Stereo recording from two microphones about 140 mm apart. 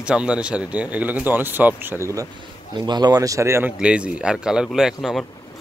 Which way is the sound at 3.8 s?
10° right (ahead or behind).